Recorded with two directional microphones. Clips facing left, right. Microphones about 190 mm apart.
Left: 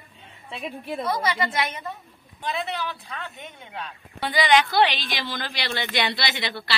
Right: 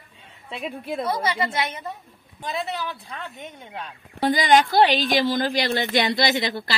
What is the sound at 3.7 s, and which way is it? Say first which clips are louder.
Speech: right 3 dB; 45° right (ahead or behind).